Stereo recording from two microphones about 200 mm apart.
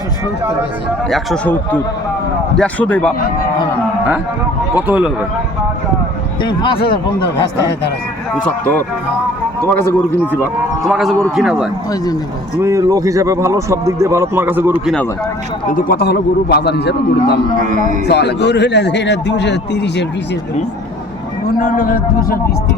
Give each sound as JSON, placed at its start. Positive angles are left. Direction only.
{"t": 1.1, "sound": "a man's voice", "side_deg": 0}
{"t": 2.6, "sound": "speech", "side_deg": 5}
{"t": 4.7, "sound": "speech", "side_deg": -10}
{"t": 6.4, "sound": "speech", "side_deg": 25}
{"t": 8.3, "sound": "speech", "side_deg": 5}
{"t": 10.8, "sound": "a man's voice", "side_deg": 0}
{"t": 12.6, "sound": "speech", "side_deg": -15}
{"t": 15.7, "sound": "speech", "side_deg": 45}
{"t": 17.6, "sound": "speech", "side_deg": -40}
{"t": 18.0, "sound": "speech", "side_deg": 55}
{"t": 21.6, "sound": "a man's voice", "side_deg": 45}